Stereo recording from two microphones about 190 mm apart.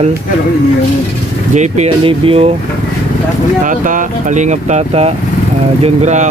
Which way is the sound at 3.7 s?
45° right (ahead or behind).